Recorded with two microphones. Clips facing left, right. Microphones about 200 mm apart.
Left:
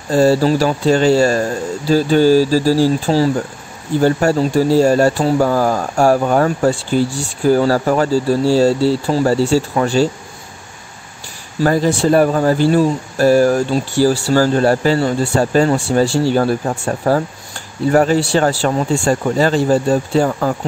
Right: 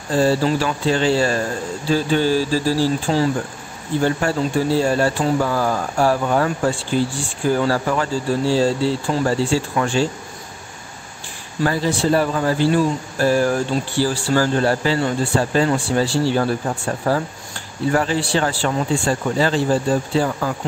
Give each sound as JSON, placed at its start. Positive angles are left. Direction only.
{"t": 0.1, "sound": "speech", "side_deg": 40}
{"t": 11.6, "sound": "speech", "side_deg": 45}